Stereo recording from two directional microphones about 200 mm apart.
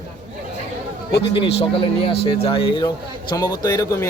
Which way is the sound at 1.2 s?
25° left (ahead or behind).